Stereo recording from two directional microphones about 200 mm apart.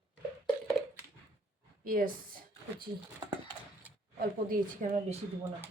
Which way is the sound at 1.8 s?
45° right (ahead or behind).